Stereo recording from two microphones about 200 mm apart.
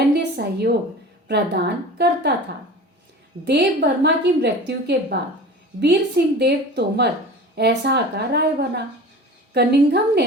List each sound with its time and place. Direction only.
0.1 s a sound: 55° right (ahead or behind)
1.3 s a woman's voice: 55° right (ahead or behind)
3.4 s a woman's voice: 55° right (ahead or behind)